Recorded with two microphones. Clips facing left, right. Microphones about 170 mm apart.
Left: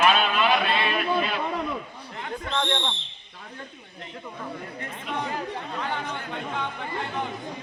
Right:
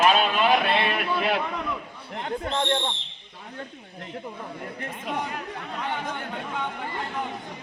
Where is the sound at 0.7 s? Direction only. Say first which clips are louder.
Even; 60° right (ahead or behind).